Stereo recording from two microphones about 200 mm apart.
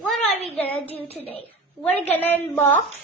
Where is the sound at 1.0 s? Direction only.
30° left (ahead or behind).